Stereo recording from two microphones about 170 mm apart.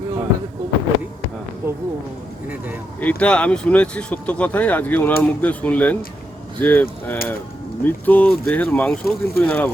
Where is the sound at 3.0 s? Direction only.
10° left (ahead or behind).